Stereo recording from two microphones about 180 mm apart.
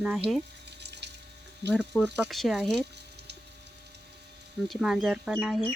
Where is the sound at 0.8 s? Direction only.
70° right (ahead or behind).